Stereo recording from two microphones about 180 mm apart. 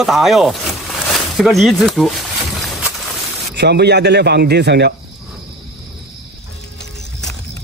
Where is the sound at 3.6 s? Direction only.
65° right (ahead or behind).